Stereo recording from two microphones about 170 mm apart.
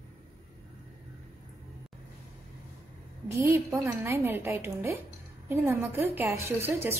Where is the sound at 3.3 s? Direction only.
15° right (ahead or behind).